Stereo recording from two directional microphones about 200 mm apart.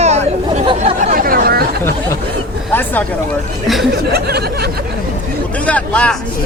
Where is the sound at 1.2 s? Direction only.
45° right (ahead or behind).